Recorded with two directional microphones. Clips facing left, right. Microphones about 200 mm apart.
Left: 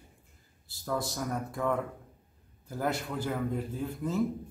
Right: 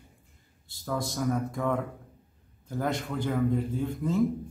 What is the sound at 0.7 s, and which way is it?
A man's voice, centre (ahead or behind).